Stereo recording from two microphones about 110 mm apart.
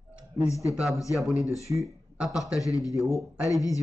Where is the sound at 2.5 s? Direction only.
30° left (ahead or behind).